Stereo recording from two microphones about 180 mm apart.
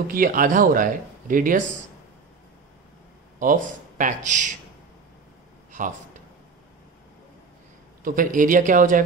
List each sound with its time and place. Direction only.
0.1 s speech: 50° right (ahead or behind)
3.3 s speech: 45° right (ahead or behind)
8.0 s speech: 50° right (ahead or behind)